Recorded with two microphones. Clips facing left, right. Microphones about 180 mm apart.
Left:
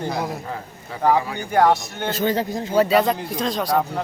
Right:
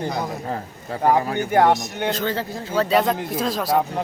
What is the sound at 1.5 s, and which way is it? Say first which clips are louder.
Speech: even; 20° right (ahead or behind).